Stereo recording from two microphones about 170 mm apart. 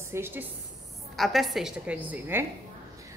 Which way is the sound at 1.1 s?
Centre (ahead or behind).